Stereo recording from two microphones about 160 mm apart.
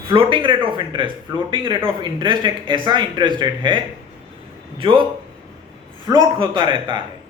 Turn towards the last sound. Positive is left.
turn(degrees=-30)  # may be behind; listen again after turning